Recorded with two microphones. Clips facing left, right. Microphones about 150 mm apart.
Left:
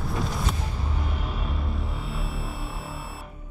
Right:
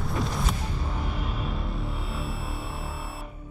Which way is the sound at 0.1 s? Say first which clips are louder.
Even; centre (ahead or behind).